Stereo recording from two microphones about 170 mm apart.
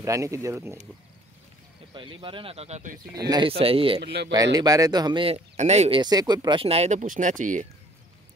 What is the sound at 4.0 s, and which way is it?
Speech, 75° right (ahead or behind).